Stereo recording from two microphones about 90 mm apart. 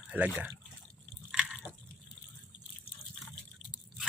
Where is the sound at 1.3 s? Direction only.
5° right (ahead or behind).